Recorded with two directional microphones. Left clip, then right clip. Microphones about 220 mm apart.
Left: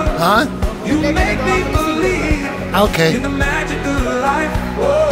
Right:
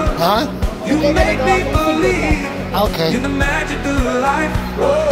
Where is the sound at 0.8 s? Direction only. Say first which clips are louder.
Right 2 dB; centre (ahead or behind).